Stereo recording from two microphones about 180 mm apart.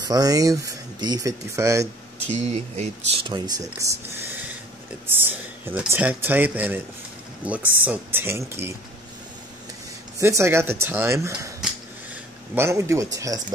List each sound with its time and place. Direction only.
0.1 s speech: 20° right (ahead or behind)
2.2 s speech: 35° right (ahead or behind)
3.3 s speech: 20° right (ahead or behind)
10.1 s speech: 15° right (ahead or behind)
12.5 s speech: 15° right (ahead or behind)